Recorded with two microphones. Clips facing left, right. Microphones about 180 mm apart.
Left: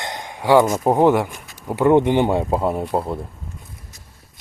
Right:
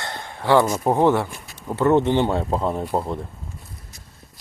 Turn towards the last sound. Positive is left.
turn(degrees=5)  # may be behind; listen again after turning